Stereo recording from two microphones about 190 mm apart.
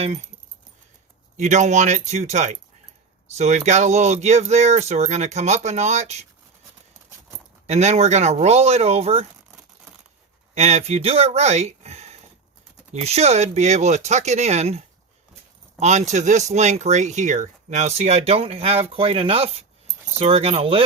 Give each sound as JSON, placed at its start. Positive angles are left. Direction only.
{"t": 1.4, "sound": "speech", "side_deg": -40}
{"t": 7.7, "sound": "speech", "side_deg": -35}
{"t": 10.5, "sound": "speech", "side_deg": -35}